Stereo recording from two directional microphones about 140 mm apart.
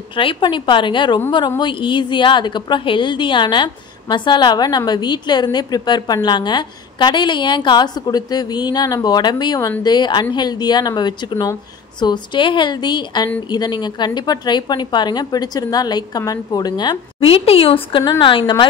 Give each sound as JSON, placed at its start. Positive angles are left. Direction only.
{"t": 0.1, "sound": "a woman's voice", "side_deg": 35}